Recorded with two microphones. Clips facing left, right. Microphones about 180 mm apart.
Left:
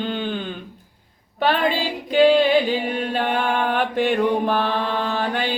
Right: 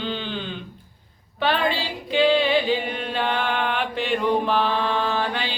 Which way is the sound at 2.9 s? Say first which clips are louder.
Left 3 dB; 45° left (ahead or behind).